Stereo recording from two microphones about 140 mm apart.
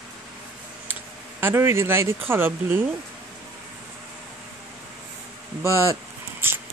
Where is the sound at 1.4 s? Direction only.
20° right (ahead or behind).